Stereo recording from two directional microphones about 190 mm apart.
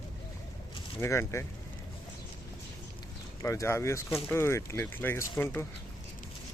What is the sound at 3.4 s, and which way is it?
Speech, 15° left (ahead or behind).